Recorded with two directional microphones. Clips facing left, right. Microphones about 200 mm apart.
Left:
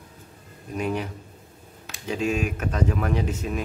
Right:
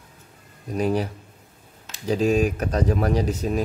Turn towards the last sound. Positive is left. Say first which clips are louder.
# right 4 dB
turn(degrees=-35)  # may be behind; listen again after turning